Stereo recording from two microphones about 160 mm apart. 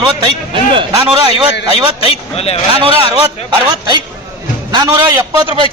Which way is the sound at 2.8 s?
30° right (ahead or behind).